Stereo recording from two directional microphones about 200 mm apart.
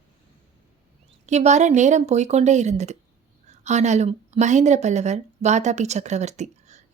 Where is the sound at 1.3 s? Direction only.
35° right (ahead or behind).